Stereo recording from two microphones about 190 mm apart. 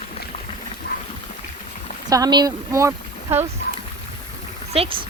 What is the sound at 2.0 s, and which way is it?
Speech, 20° right (ahead or behind).